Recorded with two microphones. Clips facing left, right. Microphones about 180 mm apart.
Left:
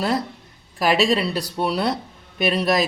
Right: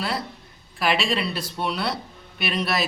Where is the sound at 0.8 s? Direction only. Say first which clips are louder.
Left 5 dB; 40° left (ahead or behind).